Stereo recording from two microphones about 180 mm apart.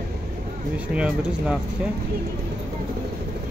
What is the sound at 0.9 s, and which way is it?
Speech, 5° right (ahead or behind).